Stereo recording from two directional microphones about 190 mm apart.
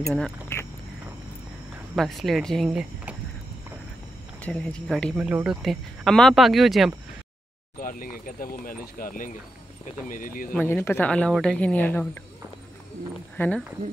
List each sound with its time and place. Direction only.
0.1 s cricket: 10° left (ahead or behind)
2.0 s speech: centre (ahead or behind)
4.4 s speech: 5° left (ahead or behind)
7.8 s speech: 45° left (ahead or behind)
10.5 s speech: 10° left (ahead or behind)
13.4 s speech: 5° left (ahead or behind)